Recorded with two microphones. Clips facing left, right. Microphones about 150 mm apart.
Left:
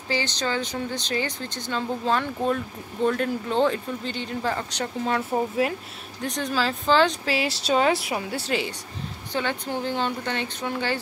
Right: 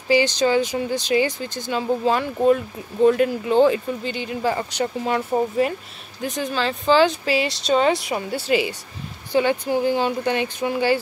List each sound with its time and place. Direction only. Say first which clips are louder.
0.1 s speech: right 9 dB; 10° right (ahead or behind)